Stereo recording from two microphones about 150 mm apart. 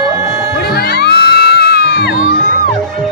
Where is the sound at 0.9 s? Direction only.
90° left.